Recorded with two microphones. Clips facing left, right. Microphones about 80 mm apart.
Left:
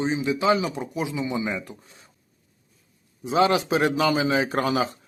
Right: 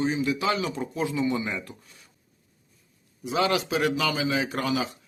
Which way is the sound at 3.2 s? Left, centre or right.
Left.